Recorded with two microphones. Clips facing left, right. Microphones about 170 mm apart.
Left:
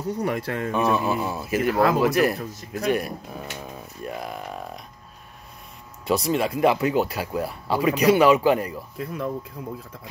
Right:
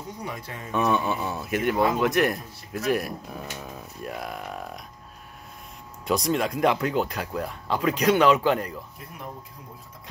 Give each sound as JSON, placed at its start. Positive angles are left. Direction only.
{"t": 0.2, "sound": "speech", "side_deg": 65}
{"t": 0.7, "sound": "speech", "side_deg": 0}
{"t": 6.0, "sound": "speech", "side_deg": 0}
{"t": 8.9, "sound": "speech", "side_deg": 90}